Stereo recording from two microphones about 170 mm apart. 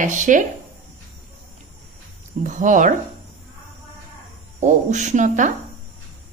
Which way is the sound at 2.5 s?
50° right (ahead or behind).